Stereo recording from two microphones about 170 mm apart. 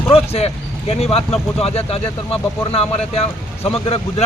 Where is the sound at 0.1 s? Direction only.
35° left (ahead or behind).